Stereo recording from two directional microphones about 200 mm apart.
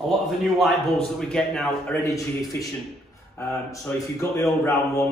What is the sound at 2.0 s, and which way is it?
A man's voice, 15° left (ahead or behind).